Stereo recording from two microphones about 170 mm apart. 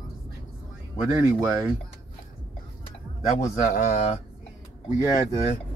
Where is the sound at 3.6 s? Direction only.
50° left (ahead or behind).